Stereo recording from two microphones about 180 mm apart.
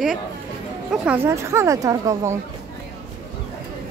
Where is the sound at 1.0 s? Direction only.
15° right (ahead or behind).